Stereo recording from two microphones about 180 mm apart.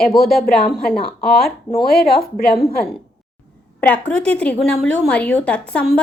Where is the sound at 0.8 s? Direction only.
55° left (ahead or behind).